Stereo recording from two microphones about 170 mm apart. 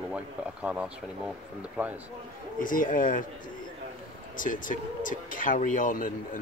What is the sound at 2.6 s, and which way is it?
Speech, 50° left (ahead or behind).